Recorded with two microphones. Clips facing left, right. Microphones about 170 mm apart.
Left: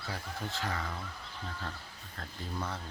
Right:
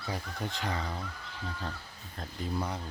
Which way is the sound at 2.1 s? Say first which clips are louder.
Right 5 dB; 15° right (ahead or behind).